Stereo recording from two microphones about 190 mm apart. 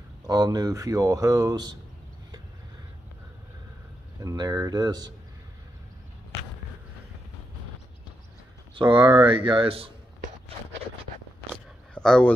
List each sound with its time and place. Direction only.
0.3 s speech: 20° right (ahead or behind)
4.2 s speech: 20° right (ahead or behind)
8.7 s speech: 25° right (ahead or behind)
11.9 s speech: 5° left (ahead or behind)